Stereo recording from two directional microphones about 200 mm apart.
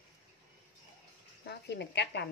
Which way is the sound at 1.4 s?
55° left (ahead or behind).